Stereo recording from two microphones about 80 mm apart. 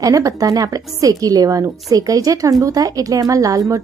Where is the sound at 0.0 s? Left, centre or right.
Right.